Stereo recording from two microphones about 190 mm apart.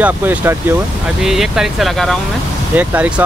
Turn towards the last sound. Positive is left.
turn(degrees=-10)  # may be behind; listen again after turning